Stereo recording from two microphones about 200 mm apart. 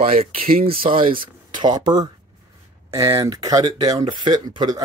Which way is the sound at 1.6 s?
20° right (ahead or behind).